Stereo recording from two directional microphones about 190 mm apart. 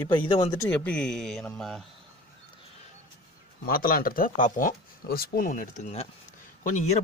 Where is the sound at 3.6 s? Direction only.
50° left (ahead or behind).